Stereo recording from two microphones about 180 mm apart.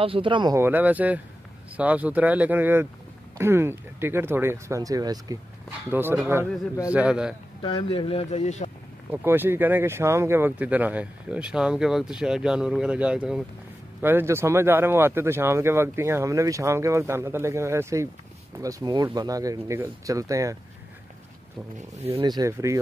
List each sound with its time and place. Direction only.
0.0 s speech: 30° right (ahead or behind)
0.6 s speech: 10° right (ahead or behind)
7.6 s speech: 30° left (ahead or behind)
9.1 s speech: 10° right (ahead or behind)
21.7 s speech: 35° right (ahead or behind)
22.2 s speech: 20° right (ahead or behind)